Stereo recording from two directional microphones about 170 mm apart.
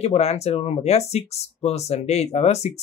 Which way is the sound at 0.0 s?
40° left (ahead or behind).